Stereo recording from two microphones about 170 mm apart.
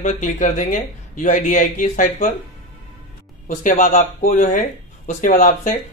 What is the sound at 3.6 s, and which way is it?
Speech, 50° left (ahead or behind).